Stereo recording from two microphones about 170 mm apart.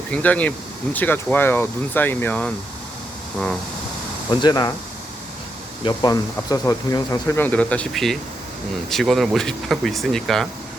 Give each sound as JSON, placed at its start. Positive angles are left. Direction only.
{"t": 0.1, "sound": "speech", "side_deg": 10}
{"t": 4.4, "sound": "speech", "side_deg": 25}
{"t": 5.8, "sound": "speech", "side_deg": 25}